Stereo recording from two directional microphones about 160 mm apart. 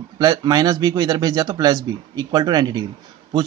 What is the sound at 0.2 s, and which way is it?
A man's voice, 25° right (ahead or behind).